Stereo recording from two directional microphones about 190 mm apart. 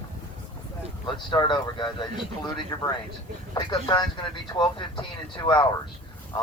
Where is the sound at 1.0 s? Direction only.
25° left (ahead or behind).